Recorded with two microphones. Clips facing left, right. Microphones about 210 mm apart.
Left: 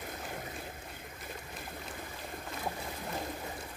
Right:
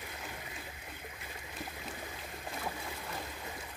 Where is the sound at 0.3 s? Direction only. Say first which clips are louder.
Left 5 dB; 50° left (ahead or behind).